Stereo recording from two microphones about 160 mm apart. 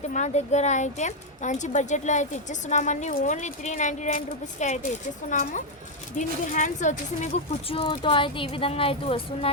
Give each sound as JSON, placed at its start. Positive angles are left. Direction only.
{"t": 0.1, "sound": "speech", "side_deg": 45}
{"t": 7.7, "sound": "speech", "side_deg": 35}